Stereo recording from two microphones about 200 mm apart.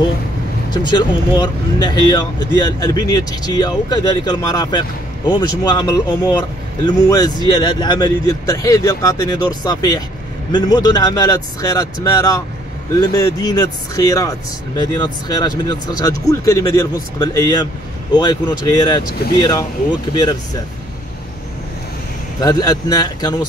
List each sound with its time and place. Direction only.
0.7 s speech: 20° left (ahead or behind)
22.4 s speech: 20° left (ahead or behind)